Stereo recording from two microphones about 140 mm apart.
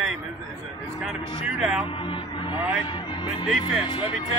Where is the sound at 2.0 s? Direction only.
40° left (ahead or behind).